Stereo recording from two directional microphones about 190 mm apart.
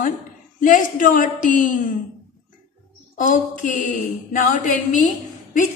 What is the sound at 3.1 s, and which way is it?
Speech, 40° left (ahead or behind).